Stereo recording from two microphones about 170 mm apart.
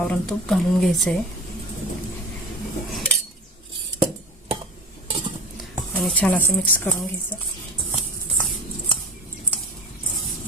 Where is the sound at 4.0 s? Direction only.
35° right (ahead or behind).